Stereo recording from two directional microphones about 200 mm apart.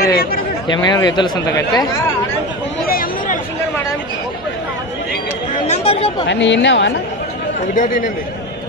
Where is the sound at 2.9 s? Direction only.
45° left (ahead or behind).